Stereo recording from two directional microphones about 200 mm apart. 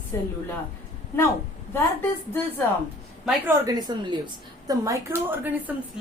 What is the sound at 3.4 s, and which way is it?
A woman's voice, 20° right (ahead or behind).